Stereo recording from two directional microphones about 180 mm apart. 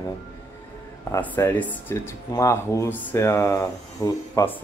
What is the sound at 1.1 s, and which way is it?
Speech, 15° left (ahead or behind).